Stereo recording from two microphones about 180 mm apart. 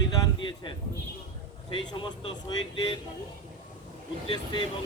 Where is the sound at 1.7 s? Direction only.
25° left (ahead or behind).